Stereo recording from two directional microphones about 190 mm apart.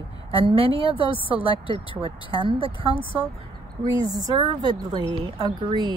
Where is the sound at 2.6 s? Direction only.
25° left (ahead or behind).